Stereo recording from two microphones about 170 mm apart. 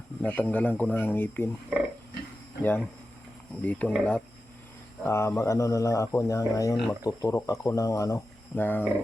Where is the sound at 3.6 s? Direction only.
10° left (ahead or behind).